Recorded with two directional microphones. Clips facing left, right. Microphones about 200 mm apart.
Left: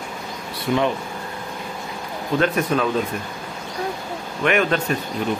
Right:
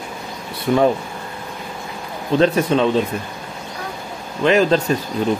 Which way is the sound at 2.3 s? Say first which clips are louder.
Right 5 dB; 30° right (ahead or behind).